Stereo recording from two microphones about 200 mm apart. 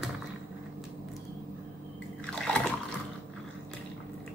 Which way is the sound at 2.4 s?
Centre (ahead or behind).